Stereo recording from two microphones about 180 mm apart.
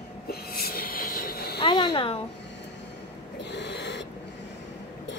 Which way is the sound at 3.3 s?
70° left (ahead or behind).